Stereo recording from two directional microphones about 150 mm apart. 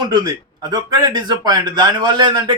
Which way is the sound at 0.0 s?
30° right (ahead or behind).